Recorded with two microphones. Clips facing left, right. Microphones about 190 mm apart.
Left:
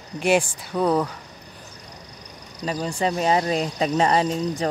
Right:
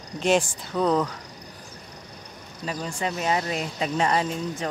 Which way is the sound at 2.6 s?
30° left (ahead or behind).